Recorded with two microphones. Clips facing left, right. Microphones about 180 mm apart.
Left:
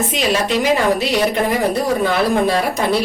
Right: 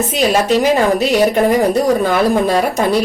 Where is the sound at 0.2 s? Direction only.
40° right (ahead or behind).